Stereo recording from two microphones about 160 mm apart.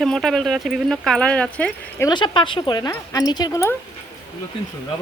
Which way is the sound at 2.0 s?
30° left (ahead or behind).